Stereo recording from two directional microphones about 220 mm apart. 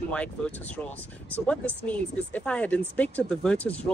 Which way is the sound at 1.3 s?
5° left (ahead or behind).